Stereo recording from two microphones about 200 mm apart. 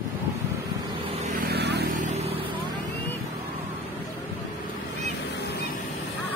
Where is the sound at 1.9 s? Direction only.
40° right (ahead or behind).